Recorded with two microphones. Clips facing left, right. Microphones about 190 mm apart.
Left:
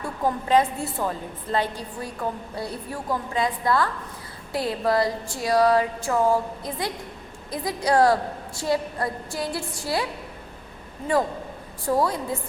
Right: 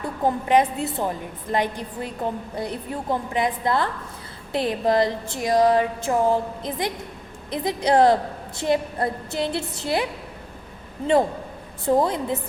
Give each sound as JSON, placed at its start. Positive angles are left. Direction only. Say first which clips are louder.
{"t": 0.0, "sound": "a woman's voice", "louder": "right 2 dB", "side_deg": -20}